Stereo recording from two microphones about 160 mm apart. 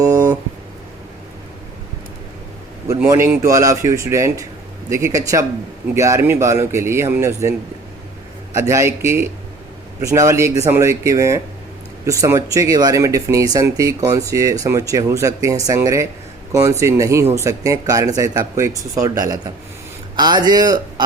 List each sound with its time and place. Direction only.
0.0 s a sound: 20° right (ahead or behind)
2.8 s speech: 20° right (ahead or behind)
8.5 s speech: 20° right (ahead or behind)